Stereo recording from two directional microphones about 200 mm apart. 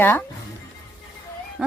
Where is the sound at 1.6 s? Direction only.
Centre (ahead or behind).